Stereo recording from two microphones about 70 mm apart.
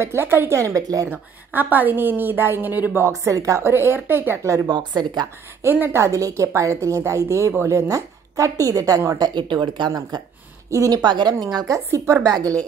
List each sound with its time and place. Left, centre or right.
0.0 s a woman's voice: right
1.0 s a woman's voice: right
3.0 s a woman's voice: right
3.6 s a woman's voice: right
4.6 s a woman's voice: right
5.6 s a woman's voice: right
9.2 s speech: right
10.7 s speech: right
11.0 s a woman's voice: right
11.4 s speech: right
11.7 s speech: right